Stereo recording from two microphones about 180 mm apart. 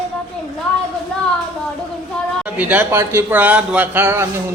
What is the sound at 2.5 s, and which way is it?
A man's voice, 10° right (ahead or behind).